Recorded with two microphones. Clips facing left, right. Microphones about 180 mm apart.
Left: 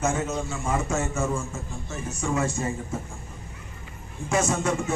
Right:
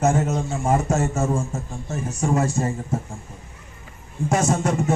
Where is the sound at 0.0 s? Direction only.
40° right (ahead or behind).